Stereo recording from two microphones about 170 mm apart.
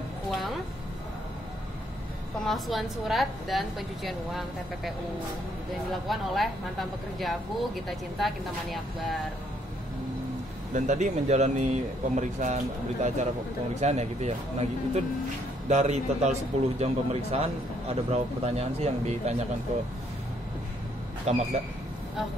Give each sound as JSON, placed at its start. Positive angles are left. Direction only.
{"t": 2.4, "sound": "speech", "side_deg": 0}
{"t": 6.0, "sound": "speech", "side_deg": 0}
{"t": 10.7, "sound": "speech", "side_deg": -45}
{"t": 21.3, "sound": "speech", "side_deg": -40}